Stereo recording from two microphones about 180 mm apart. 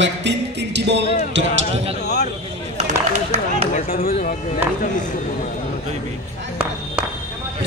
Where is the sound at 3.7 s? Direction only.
55° left (ahead or behind).